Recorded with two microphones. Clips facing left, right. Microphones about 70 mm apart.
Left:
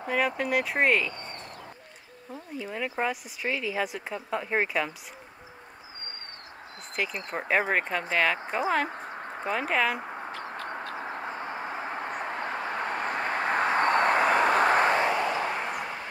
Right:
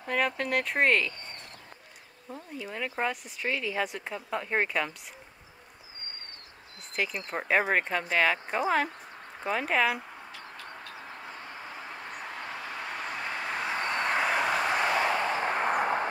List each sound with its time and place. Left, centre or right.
0.4 s speech: centre
2.3 s speech: centre
7.0 s speech: centre
8.9 s a sound: left
9.5 s speech: centre
9.9 s a sound: left
15.4 s vehicle: right